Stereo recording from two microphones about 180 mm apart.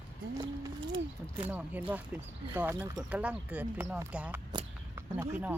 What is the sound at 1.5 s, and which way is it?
Speech, 10° right (ahead or behind).